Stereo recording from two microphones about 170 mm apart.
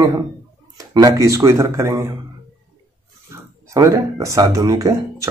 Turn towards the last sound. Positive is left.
turn(degrees=-20)  # may be behind; listen again after turning